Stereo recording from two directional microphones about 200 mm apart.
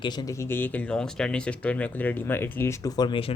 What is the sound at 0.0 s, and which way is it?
Speech, 20° left (ahead or behind).